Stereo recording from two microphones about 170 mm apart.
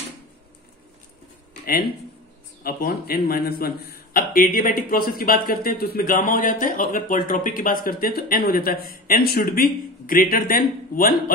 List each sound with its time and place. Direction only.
2.6 s a man's voice: 60° left (ahead or behind)